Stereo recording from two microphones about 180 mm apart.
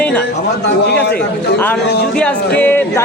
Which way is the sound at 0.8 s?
65° left (ahead or behind).